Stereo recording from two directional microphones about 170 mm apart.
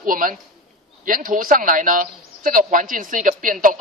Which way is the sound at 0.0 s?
55° right (ahead or behind).